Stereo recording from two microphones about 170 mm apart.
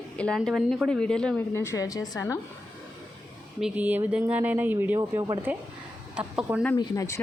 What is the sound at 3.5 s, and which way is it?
Speech, 5° right (ahead or behind).